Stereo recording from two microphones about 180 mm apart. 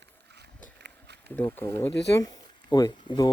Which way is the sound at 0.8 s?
70° right (ahead or behind).